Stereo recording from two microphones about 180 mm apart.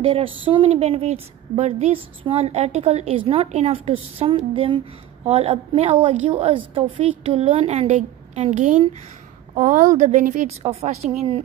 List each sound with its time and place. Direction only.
0.0 s a woman's voice: 30° right (ahead or behind)